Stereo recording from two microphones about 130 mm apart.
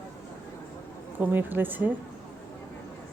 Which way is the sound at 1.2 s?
15° right (ahead or behind).